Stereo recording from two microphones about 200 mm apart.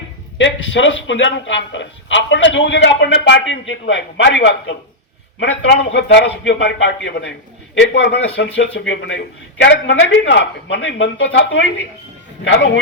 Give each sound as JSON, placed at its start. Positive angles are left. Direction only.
{"t": 0.3, "sound": "a man's voice", "side_deg": 70}